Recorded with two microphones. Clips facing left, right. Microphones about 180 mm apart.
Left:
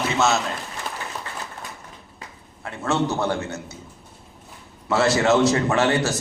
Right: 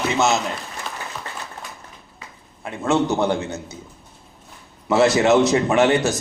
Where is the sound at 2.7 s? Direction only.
15° right (ahead or behind).